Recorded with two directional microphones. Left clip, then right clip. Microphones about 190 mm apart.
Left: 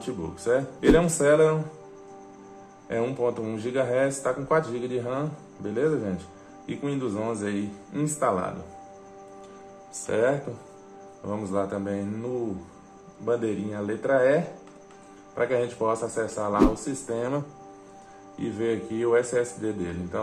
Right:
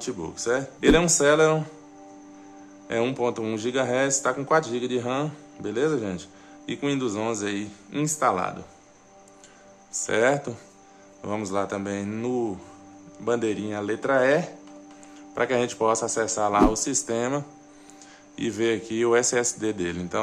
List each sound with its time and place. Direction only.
0.0 s speech: 25° right (ahead or behind)
2.9 s a man's voice: 35° right (ahead or behind)
10.0 s a man's voice: 25° right (ahead or behind)
17.1 s speech: 25° right (ahead or behind)
18.4 s a man's voice: 35° right (ahead or behind)